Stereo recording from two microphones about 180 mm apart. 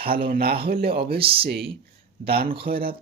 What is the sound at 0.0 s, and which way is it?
Speech, 55° right (ahead or behind).